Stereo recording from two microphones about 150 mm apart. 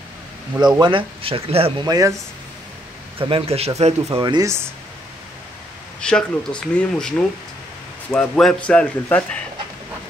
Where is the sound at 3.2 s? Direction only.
35° right (ahead or behind).